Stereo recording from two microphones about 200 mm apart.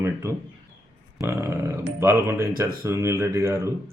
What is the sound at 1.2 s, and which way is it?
Speech, 15° right (ahead or behind).